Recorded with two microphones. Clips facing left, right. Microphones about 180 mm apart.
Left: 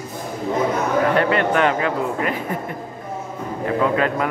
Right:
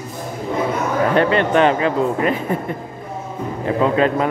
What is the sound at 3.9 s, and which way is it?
Speech, 25° right (ahead or behind).